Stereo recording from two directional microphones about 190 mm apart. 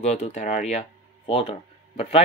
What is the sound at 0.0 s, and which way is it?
Speech, 35° left (ahead or behind).